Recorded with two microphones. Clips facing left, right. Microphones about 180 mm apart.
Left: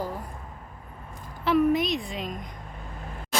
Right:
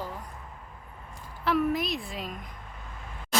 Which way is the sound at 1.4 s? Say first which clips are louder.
Left 4 dB; centre (ahead or behind).